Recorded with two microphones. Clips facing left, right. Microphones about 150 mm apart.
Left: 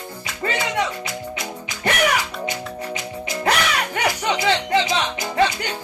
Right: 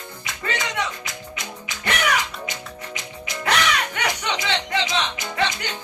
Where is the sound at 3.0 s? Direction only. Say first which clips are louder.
Left 6 dB; 30° left (ahead or behind).